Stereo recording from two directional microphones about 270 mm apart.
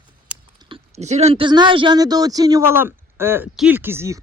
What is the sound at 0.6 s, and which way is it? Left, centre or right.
Speech, right.